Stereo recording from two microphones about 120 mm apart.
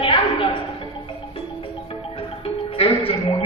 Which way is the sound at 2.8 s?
55° left (ahead or behind).